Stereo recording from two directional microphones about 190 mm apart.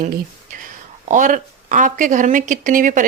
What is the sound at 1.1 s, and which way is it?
Speech, 45° right (ahead or behind).